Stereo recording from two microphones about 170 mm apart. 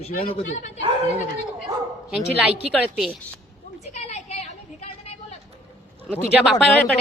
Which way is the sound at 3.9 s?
40° left (ahead or behind).